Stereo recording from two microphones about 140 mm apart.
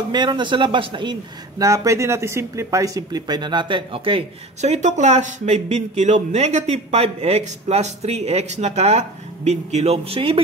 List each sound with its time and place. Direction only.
0.1 s speech: 30° right (ahead or behind)
1.6 s speech: 25° right (ahead or behind); by 10.4 s 40° right (ahead or behind)